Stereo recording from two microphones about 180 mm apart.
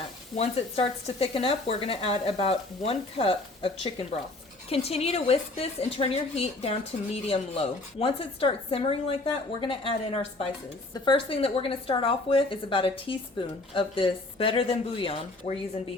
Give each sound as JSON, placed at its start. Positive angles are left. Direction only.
{"t": 0.3, "sound": "a woman's voice", "side_deg": 35}
{"t": 10.9, "sound": "a woman's voice", "side_deg": 25}